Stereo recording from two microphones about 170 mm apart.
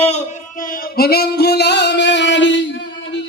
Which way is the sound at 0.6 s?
55° left (ahead or behind).